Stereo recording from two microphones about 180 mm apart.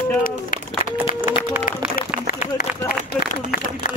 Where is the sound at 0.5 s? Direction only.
50° left (ahead or behind).